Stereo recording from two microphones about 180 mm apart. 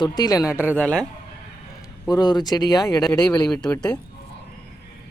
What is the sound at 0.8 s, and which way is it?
Speech, 5° left (ahead or behind).